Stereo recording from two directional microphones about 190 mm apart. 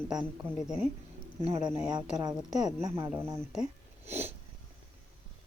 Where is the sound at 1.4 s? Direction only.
30° right (ahead or behind); by 3.4 s 10° right (ahead or behind).